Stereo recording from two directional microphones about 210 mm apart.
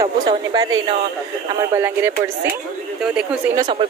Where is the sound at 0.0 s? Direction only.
20° right (ahead or behind); by 3.3 s 5° right (ahead or behind).